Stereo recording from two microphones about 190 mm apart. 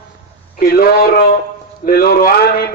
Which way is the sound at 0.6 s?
50° left (ahead or behind).